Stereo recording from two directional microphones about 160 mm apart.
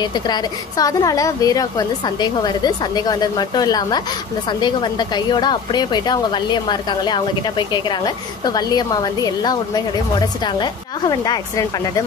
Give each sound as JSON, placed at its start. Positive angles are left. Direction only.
{"t": 0.0, "sound": "a woman's voice", "side_deg": 25}